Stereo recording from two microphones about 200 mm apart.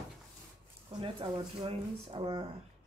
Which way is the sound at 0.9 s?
25° right (ahead or behind).